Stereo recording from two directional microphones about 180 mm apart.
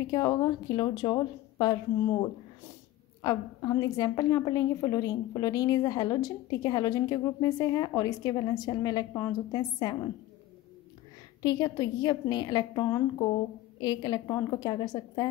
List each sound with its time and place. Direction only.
0.0 s a woman's voice: 25° left (ahead or behind)
3.2 s a woman's voice: 20° left (ahead or behind)
11.4 s a woman's voice: 20° left (ahead or behind)